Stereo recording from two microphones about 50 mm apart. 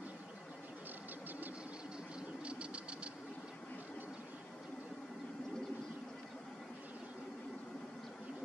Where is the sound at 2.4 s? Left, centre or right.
Right.